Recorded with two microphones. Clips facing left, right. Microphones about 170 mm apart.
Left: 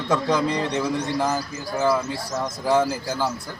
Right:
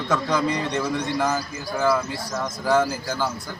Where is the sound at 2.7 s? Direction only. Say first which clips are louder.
Even; 30° left (ahead or behind).